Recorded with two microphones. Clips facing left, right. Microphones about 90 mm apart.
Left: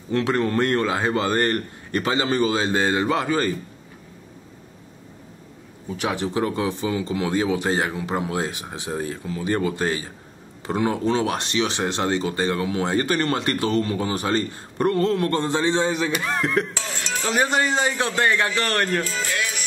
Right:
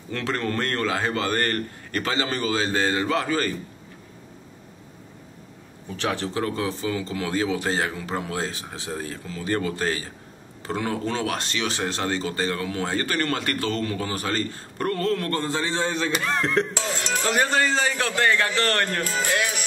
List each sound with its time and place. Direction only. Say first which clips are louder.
0.1 s speech: left 6 dB; 20° left (ahead or behind)
5.9 s speech: left 2 dB; 15° left (ahead or behind)
16.2 s speech: even; 5° left (ahead or behind)
17.3 s speech: left 1 dB; 20° left (ahead or behind)